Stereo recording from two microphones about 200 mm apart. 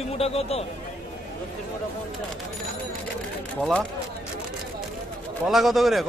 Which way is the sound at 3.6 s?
5° left (ahead or behind).